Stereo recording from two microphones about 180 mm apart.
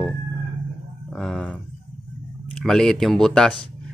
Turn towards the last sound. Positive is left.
turn(degrees=5)  # may be behind; listen again after turning